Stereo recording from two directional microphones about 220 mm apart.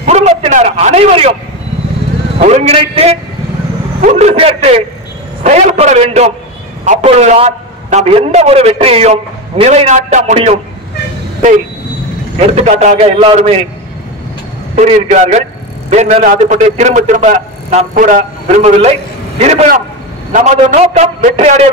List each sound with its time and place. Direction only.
0.0 s a man's voice: 30° right (ahead or behind)
2.3 s a man's voice: 30° right (ahead or behind)
12.4 s a man's voice: 30° right (ahead or behind)
14.8 s a man's voice: 30° right (ahead or behind)